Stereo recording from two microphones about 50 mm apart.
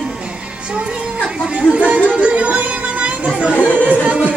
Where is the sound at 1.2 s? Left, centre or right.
Centre; by 4.1 s right.